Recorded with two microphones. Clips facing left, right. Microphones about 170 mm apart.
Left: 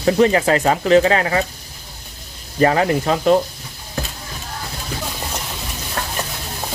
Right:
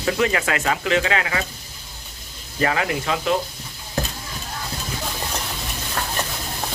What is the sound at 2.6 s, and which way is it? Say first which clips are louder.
Speech: left 7 dB; 35° left (ahead or behind).